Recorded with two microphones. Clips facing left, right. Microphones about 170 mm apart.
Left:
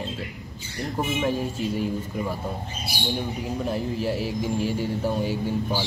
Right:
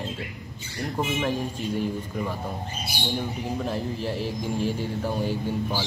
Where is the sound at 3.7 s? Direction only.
10° left (ahead or behind).